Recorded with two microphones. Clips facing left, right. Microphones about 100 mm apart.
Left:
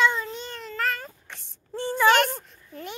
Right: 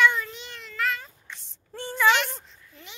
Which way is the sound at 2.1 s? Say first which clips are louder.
Left 3 dB; 45° left (ahead or behind).